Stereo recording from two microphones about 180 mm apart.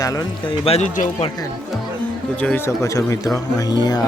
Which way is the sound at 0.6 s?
40° left (ahead or behind).